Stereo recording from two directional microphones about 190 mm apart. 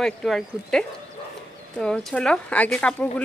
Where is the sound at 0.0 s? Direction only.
Centre (ahead or behind).